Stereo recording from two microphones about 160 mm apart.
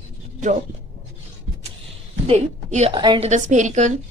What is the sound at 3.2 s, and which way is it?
Speech, 50° right (ahead or behind).